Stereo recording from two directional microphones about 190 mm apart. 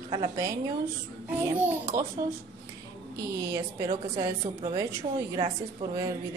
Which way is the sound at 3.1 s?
15° right (ahead or behind).